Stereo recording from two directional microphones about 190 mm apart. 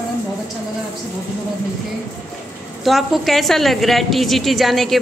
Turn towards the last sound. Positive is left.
turn(degrees=0)  # may be behind; listen again after turning